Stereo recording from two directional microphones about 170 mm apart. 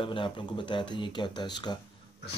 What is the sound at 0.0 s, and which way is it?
Speech, 30° left (ahead or behind).